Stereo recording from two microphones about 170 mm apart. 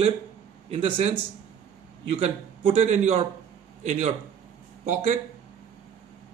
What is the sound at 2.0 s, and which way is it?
A man's voice, 35° right (ahead or behind).